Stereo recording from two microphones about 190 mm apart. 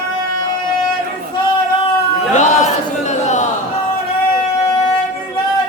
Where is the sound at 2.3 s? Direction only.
40° left (ahead or behind).